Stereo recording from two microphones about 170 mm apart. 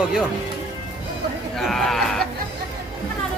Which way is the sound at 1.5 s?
Centre (ahead or behind).